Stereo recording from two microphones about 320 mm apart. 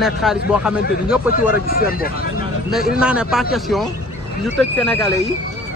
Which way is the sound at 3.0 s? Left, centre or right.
Centre.